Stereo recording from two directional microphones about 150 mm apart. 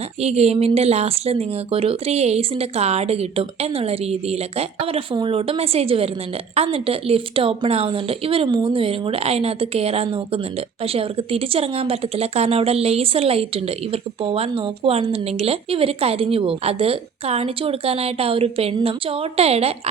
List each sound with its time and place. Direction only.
0.2 s speech: 45° right (ahead or behind)